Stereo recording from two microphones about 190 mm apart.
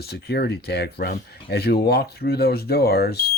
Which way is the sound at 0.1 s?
60° left (ahead or behind).